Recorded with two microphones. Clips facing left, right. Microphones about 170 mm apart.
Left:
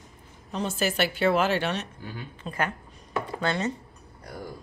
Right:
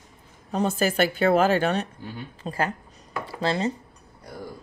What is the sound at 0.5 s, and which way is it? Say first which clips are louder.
Speech: right 4 dB; 50° right (ahead or behind).